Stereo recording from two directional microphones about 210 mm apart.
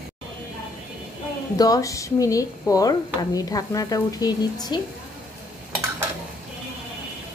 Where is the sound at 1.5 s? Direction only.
15° left (ahead or behind).